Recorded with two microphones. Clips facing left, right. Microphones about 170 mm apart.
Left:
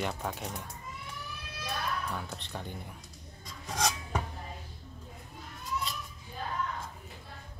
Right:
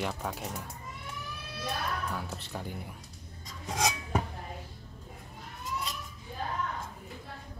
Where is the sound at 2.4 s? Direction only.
5° right (ahead or behind).